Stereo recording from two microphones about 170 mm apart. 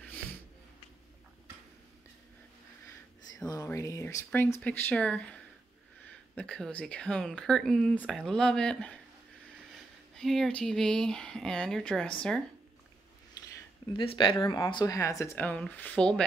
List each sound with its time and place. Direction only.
3.4 s speech: 20° left (ahead or behind)
10.1 s speech: centre (ahead or behind)
13.9 s speech: 30° left (ahead or behind); by 16.3 s 5° left (ahead or behind)